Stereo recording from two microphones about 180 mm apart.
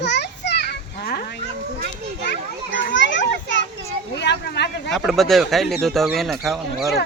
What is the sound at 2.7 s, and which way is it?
Children playing, 90° left.